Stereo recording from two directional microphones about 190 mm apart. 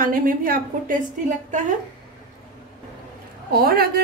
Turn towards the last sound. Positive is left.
turn(degrees=-55)  # may be behind; listen again after turning